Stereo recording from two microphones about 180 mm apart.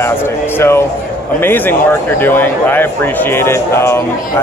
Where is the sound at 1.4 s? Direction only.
10° left (ahead or behind).